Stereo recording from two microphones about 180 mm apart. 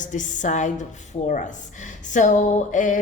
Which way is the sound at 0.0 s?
45° left (ahead or behind).